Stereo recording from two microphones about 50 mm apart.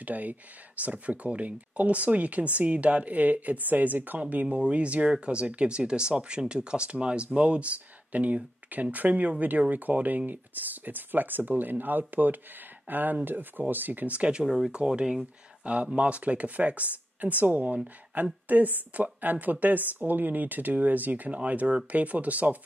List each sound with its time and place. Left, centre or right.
0.0 s speech: right
4.5 s speech: right
14.4 s speech: centre
15.6 s speech: right